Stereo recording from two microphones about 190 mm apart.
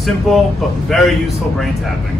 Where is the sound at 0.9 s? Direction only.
Centre (ahead or behind).